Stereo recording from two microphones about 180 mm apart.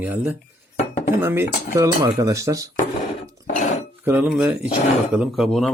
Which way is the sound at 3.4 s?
45° left (ahead or behind).